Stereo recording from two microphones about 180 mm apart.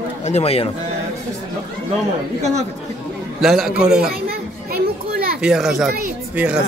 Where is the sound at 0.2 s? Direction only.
35° left (ahead or behind).